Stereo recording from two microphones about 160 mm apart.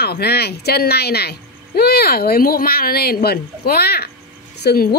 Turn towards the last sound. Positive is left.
turn(degrees=80)